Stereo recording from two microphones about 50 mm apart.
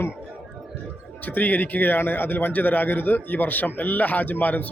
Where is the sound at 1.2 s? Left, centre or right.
Left.